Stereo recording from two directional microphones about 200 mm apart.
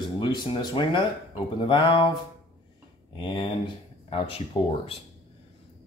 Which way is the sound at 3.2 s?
25° left (ahead or behind).